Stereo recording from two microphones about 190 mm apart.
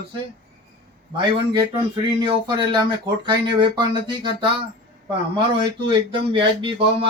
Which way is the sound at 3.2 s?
25° right (ahead or behind).